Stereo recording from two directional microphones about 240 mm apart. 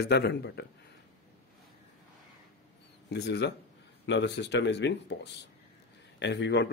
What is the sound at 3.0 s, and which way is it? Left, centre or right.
A man's voice, left.